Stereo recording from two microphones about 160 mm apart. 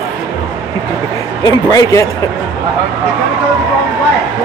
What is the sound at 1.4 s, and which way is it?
Speech, 20° left (ahead or behind).